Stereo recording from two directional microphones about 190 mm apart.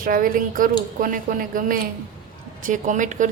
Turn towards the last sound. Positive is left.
turn(degrees=-40)  # may be behind; listen again after turning